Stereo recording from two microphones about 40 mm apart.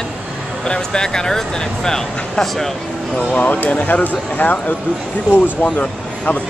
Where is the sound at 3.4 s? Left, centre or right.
Left.